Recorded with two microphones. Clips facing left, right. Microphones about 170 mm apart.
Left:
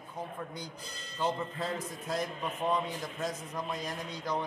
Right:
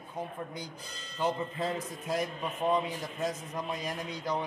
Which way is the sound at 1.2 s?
15° right (ahead or behind).